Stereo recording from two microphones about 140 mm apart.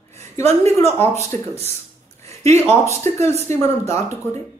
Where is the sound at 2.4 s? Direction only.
20° left (ahead or behind).